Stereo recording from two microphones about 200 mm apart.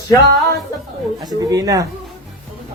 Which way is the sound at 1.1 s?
20° right (ahead or behind).